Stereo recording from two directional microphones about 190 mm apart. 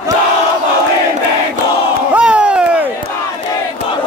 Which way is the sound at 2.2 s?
5° right (ahead or behind).